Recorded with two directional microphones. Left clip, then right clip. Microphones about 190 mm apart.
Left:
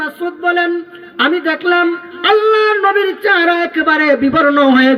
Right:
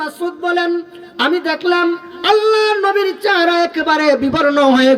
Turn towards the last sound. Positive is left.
turn(degrees=25)  # may be behind; listen again after turning